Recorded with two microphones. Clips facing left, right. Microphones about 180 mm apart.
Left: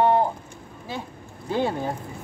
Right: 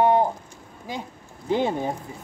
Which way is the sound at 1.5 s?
20° right (ahead or behind).